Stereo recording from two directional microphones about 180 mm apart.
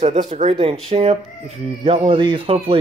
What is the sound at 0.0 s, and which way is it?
Speech, 45° right (ahead or behind).